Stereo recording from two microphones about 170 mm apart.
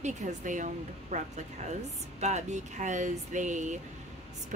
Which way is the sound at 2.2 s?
40° right (ahead or behind).